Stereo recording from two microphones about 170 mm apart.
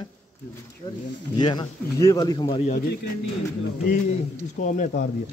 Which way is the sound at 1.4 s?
25° left (ahead or behind).